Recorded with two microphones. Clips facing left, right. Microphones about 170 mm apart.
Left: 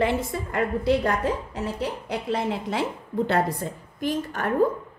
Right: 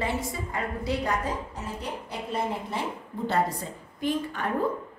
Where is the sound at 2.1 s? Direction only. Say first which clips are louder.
Left 3 dB; 90° left.